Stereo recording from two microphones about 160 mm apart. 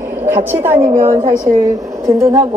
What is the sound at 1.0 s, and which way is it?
A woman's voice, 15° right (ahead or behind).